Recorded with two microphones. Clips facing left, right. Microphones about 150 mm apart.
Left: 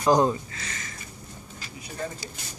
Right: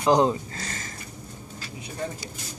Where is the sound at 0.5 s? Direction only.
35° right (ahead or behind).